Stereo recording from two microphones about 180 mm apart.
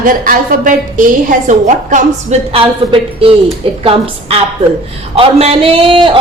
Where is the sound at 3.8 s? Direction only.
30° right (ahead or behind).